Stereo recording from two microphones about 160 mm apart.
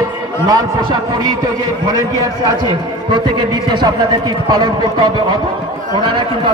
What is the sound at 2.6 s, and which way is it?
A man's voice, 30° right (ahead or behind).